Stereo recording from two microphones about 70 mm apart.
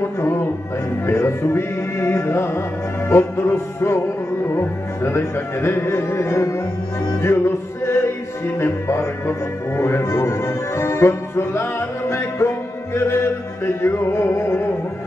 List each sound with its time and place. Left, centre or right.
1.0 s speech: left
7.2 s music: left
8.5 s speech: left